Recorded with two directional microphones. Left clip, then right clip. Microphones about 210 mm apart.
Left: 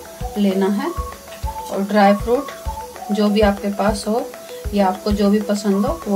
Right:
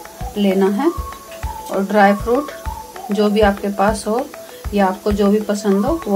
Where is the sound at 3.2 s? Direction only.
30° right (ahead or behind).